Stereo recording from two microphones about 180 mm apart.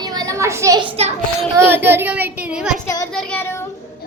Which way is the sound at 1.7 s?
10° right (ahead or behind).